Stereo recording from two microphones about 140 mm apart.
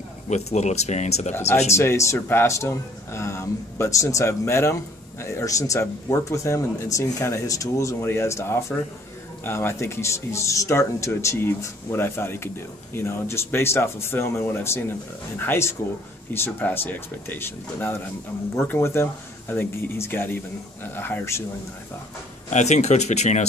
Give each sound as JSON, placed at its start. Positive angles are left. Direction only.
{"t": 0.3, "sound": "speech", "side_deg": 55}
{"t": 1.7, "sound": "speech", "side_deg": 20}
{"t": 22.5, "sound": "speech", "side_deg": 55}